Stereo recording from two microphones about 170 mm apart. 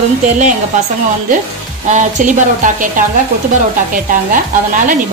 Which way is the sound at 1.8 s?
45° right (ahead or behind).